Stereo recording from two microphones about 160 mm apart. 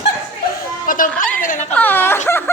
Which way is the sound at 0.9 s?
60° left (ahead or behind).